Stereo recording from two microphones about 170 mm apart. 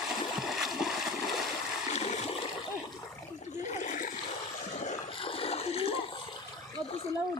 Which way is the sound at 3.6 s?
45° left (ahead or behind).